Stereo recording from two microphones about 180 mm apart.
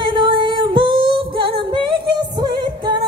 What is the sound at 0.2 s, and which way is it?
Female singing, 25° right (ahead or behind).